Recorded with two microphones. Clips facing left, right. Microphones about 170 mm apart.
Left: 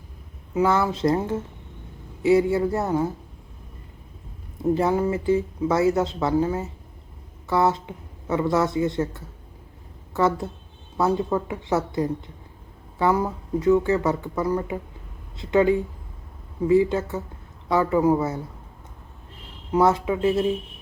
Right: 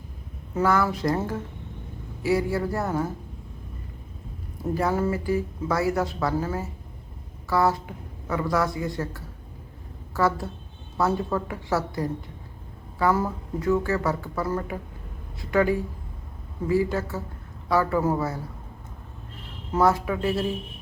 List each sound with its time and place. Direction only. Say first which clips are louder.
0.5 s speech: left 2 dB; 20° left (ahead or behind)
4.7 s speech: left 3 dB; 20° left (ahead or behind)
19.7 s speech: left 2 dB; 20° left (ahead or behind)